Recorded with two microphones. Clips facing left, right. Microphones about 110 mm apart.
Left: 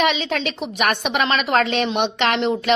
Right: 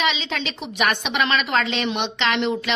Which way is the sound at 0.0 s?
50° left (ahead or behind).